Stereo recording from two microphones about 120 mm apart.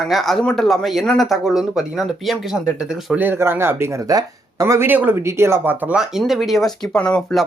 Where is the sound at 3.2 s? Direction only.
20° right (ahead or behind).